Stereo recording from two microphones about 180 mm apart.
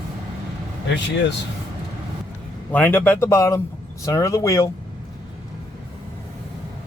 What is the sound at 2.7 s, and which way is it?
Speech, 10° left (ahead or behind).